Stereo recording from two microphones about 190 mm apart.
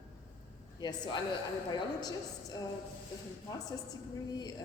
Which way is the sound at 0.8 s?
20° left (ahead or behind).